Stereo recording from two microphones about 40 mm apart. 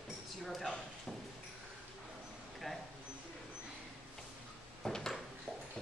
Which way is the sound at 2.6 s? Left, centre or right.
Centre.